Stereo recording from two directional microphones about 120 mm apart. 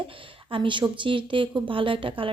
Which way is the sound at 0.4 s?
45° right (ahead or behind).